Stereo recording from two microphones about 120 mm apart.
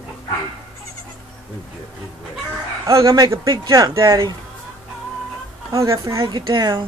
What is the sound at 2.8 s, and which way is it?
Speech, 25° right (ahead or behind).